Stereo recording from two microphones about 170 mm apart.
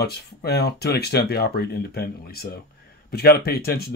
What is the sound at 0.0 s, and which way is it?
Speech, 70° left (ahead or behind).